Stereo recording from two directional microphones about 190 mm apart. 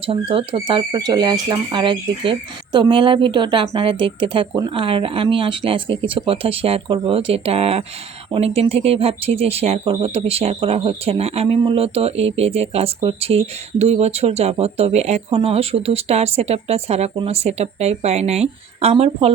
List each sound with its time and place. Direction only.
0.0 s speech: 30° right (ahead or behind)